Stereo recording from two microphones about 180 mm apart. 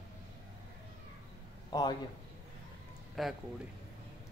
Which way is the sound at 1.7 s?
20° left (ahead or behind).